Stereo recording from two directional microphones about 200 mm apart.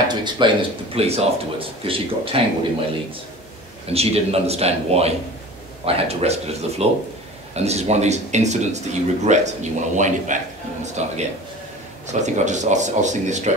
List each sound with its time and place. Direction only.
0.1 s speech: 20° right (ahead or behind)
3.9 s speech: 30° right (ahead or behind)